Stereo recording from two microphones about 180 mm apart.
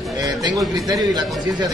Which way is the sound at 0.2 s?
20° right (ahead or behind).